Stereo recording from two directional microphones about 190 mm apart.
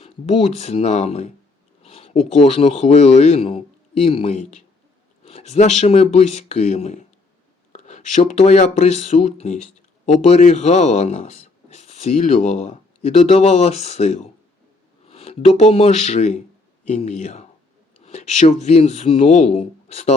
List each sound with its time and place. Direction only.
0.0 s speech: 35° left (ahead or behind)